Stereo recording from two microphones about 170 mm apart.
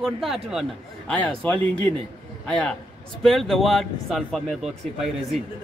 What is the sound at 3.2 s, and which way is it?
Speech, centre (ahead or behind).